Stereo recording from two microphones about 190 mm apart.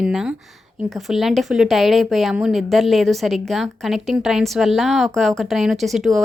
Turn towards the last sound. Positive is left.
turn(degrees=0)  # may be behind; listen again after turning